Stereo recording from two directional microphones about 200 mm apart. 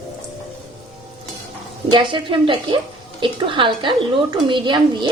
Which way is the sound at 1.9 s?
25° right (ahead or behind).